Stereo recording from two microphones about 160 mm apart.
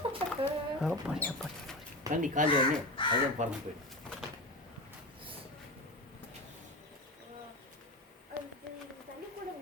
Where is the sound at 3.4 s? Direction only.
50° right (ahead or behind).